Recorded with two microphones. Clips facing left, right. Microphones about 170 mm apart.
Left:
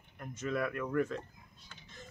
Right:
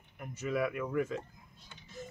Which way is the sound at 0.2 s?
10° right (ahead or behind).